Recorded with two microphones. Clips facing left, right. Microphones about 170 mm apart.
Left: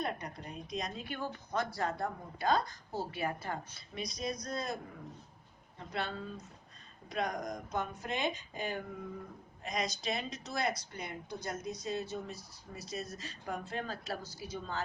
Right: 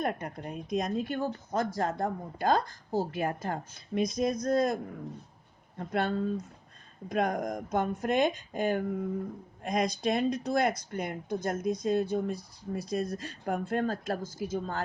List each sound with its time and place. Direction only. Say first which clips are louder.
0.0 s speech: right 6 dB; 50° right (ahead or behind)